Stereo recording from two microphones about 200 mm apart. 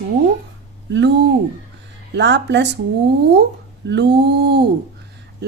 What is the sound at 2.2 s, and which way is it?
Speech, 60° right (ahead or behind).